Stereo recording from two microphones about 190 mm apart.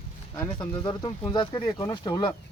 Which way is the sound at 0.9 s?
25° left (ahead or behind).